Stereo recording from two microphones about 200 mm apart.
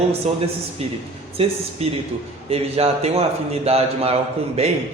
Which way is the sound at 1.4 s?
30° right (ahead or behind).